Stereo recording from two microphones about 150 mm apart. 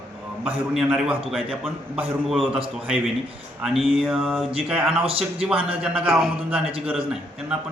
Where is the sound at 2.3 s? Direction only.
Centre (ahead or behind).